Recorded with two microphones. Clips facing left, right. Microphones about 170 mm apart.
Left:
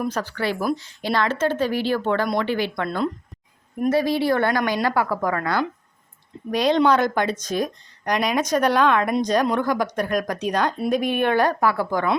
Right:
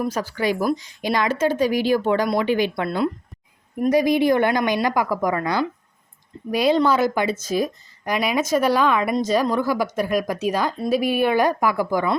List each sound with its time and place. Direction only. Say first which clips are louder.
0.0 s a woman's voice: right 2 dB; 10° right (ahead or behind)